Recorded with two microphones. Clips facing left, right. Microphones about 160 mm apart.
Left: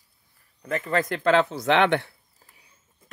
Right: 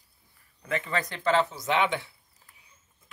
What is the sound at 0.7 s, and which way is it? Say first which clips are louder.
Speech: left 5 dB; 45° left (ahead or behind).